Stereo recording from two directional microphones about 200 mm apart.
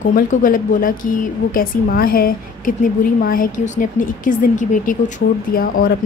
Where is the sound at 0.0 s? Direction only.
40° left (ahead or behind).